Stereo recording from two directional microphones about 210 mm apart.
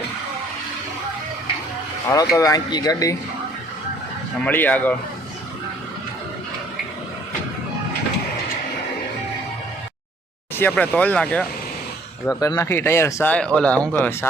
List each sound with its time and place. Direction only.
2.0 s speech: 15° left (ahead or behind)
4.4 s speech: 10° left (ahead or behind)
10.6 s speech: 5° left (ahead or behind)